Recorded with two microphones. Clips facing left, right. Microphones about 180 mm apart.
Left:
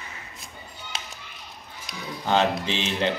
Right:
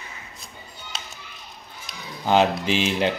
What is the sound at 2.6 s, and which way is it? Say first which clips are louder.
Speech: right 5 dB; 25° left (ahead or behind).